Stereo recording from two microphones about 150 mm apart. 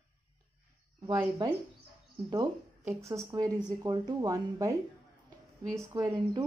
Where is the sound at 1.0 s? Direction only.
25° right (ahead or behind).